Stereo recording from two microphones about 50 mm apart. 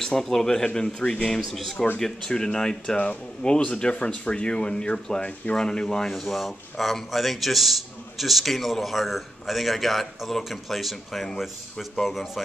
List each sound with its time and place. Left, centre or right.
0.0 s speech: centre
6.0 s a man's voice: centre